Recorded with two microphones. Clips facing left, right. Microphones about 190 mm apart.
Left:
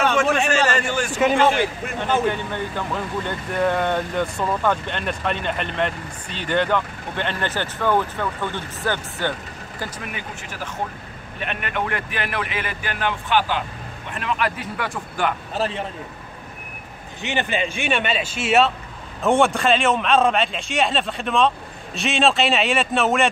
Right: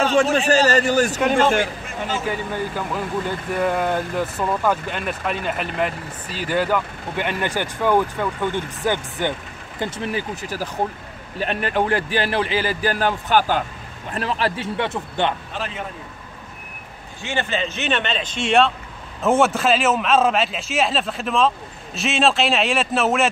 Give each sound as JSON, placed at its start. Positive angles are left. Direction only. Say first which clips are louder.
{"t": 0.0, "sound": "a sound", "louder": "right 2 dB", "side_deg": -30}
{"t": 0.5, "sound": "a man's voice", "louder": "right 4 dB", "side_deg": -35}
{"t": 1.9, "sound": "speech", "louder": "left 4 dB", "side_deg": 55}
{"t": 2.2, "sound": "speech", "louder": "left 1 dB", "side_deg": -5}
{"t": 9.8, "sound": "a man's voice", "louder": "right 7 dB", "side_deg": -25}
{"t": 15.5, "sound": "a man's voice", "louder": "left 5 dB", "side_deg": 35}
{"t": 17.2, "sound": "a man's voice", "louder": "left 1 dB", "side_deg": 15}